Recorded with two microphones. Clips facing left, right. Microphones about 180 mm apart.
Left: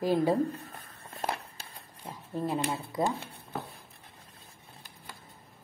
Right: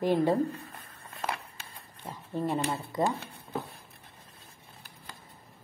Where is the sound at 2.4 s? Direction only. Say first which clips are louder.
Right 1 dB; 10° left (ahead or behind).